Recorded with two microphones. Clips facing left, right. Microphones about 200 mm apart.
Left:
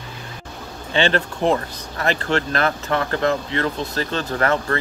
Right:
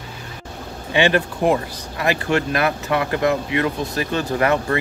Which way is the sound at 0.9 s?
10° right (ahead or behind).